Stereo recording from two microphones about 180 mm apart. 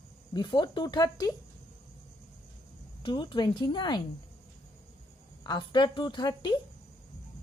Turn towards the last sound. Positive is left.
turn(degrees=25)  # may be behind; listen again after turning